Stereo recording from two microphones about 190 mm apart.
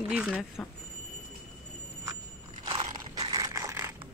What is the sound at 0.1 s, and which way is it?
Speech, 5° right (ahead or behind).